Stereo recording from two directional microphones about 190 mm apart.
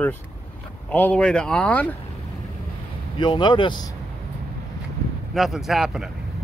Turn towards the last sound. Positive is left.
turn(degrees=0)  # may be behind; listen again after turning